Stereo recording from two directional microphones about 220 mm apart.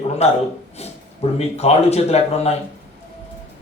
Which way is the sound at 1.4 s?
30° left (ahead or behind).